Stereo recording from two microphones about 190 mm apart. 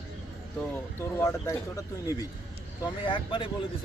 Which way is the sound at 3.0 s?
25° left (ahead or behind).